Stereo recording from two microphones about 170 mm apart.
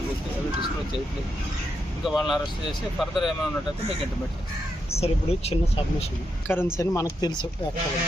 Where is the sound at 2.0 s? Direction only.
Centre (ahead or behind).